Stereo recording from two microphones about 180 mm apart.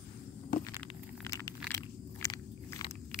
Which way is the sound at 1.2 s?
15° left (ahead or behind).